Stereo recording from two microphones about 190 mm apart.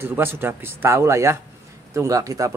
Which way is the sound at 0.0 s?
10° right (ahead or behind).